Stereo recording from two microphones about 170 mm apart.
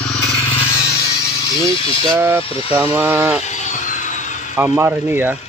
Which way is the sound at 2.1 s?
15° right (ahead or behind).